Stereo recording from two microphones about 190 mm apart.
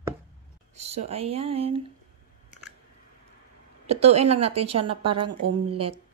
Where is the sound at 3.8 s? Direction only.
35° right (ahead or behind).